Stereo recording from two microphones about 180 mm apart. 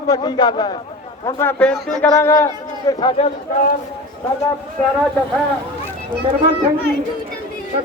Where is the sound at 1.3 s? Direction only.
10° left (ahead or behind).